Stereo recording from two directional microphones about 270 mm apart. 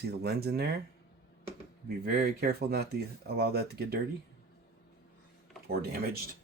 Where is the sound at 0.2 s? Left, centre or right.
Right.